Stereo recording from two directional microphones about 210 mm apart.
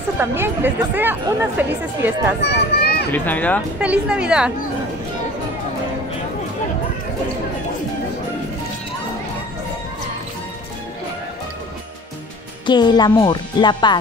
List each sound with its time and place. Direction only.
0.2 s speech: 10° right (ahead or behind)
2.5 s a sound: 50° left (ahead or behind)
3.1 s speech: 10° left (ahead or behind)
3.8 s a woman's voice: 5° right (ahead or behind)
12.6 s speech: 20° left (ahead or behind)